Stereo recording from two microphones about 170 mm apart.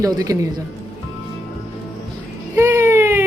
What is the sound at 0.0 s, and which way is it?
Speech, 20° right (ahead or behind).